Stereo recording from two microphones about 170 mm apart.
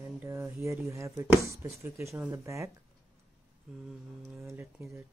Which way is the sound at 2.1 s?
Centre (ahead or behind).